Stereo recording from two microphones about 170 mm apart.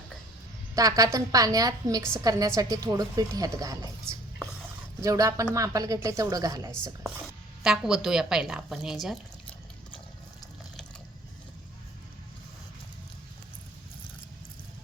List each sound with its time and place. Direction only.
0.8 s a woman's voice: 20° right (ahead or behind)
4.9 s a woman's voice: 20° right (ahead or behind)
7.6 s a woman's voice: 5° right (ahead or behind)